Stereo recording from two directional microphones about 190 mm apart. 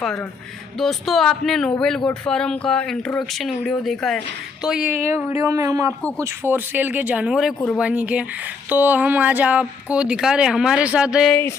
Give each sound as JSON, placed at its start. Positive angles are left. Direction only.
{"t": 0.7, "sound": "speech", "side_deg": 0}